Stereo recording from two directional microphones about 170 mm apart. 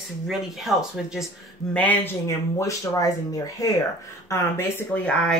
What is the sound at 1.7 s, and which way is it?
Speech, 10° left (ahead or behind).